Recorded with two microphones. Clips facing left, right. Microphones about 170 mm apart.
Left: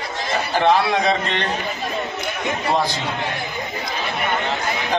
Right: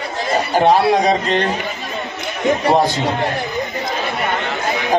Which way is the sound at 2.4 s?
40° right (ahead or behind).